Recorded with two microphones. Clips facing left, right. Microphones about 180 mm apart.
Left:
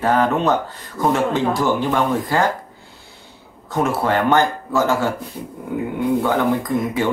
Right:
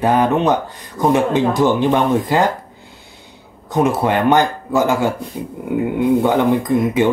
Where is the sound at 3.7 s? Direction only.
20° right (ahead or behind).